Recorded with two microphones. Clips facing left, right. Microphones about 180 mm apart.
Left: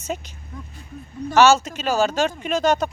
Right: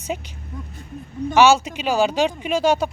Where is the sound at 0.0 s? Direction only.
10° right (ahead or behind).